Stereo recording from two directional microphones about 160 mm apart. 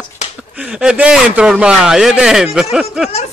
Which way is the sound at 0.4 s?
5° right (ahead or behind).